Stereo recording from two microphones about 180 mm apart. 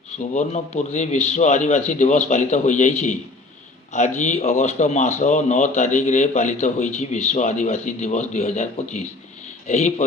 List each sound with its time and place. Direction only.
0.2 s speech: 40° left (ahead or behind)